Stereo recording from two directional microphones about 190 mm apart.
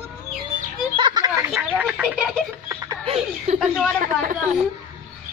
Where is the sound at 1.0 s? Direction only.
25° right (ahead or behind).